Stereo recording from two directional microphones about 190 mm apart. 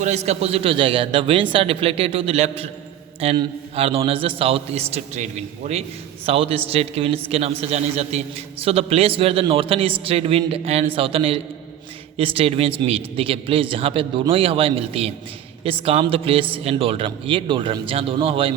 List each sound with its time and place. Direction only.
0.0 s a man's voice: 35° right (ahead or behind)